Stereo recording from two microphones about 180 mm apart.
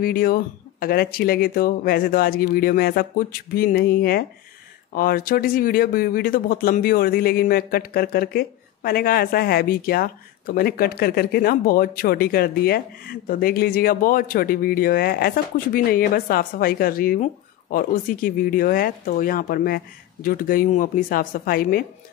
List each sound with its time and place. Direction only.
0.0 s speech: 55° left (ahead or behind)